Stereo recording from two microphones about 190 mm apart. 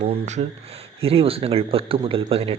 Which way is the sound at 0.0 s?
35° right (ahead or behind).